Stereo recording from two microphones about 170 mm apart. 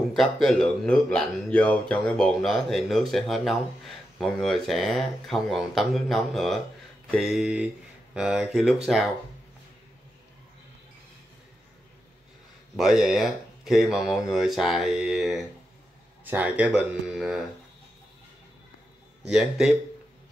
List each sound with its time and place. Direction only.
0.1 s speech: centre (ahead or behind)
12.7 s speech: centre (ahead or behind)
19.2 s speech: 5° right (ahead or behind)